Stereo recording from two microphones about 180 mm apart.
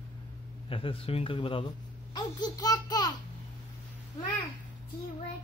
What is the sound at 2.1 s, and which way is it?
Laughter, 20° left (ahead or behind).